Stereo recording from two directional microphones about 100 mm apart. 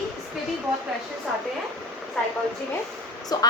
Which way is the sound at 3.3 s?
40° left (ahead or behind).